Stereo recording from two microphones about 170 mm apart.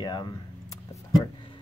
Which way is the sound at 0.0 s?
25° left (ahead or behind).